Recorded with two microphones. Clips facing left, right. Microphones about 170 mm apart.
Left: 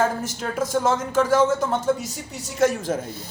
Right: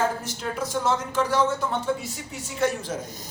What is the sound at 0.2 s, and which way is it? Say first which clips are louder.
A man's voice: left 4 dB; 50° left (ahead or behind).